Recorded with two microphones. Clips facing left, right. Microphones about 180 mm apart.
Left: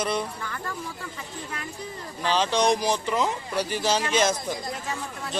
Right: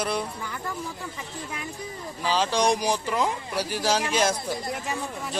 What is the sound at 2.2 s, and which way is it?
Speech, 5° right (ahead or behind).